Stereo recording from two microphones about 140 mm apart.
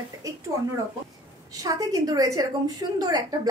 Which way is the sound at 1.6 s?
25° right (ahead or behind).